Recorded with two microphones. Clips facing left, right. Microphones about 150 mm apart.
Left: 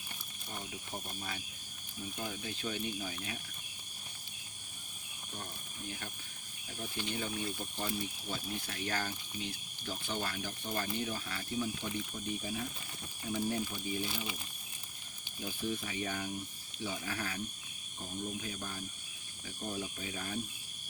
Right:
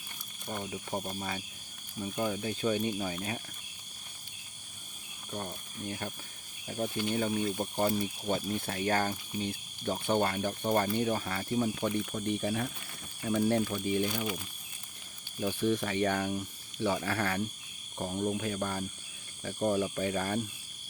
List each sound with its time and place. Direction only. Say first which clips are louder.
0.4 s speech: right 8 dB; 55° right (ahead or behind)
5.3 s speech: right 8 dB; 60° right (ahead or behind)
6.7 s speech: right 8 dB; 50° right (ahead or behind); by 14.0 s 70° right (ahead or behind)
15.4 s speech: right 9 dB; 80° right
17.9 s speech: right 9 dB; 90° right; by 20.4 s 70° right (ahead or behind)